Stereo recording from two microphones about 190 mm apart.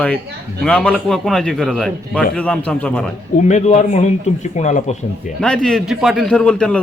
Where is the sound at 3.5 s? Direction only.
40° left (ahead or behind).